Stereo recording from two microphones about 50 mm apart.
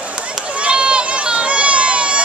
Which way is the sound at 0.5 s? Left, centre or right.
Right.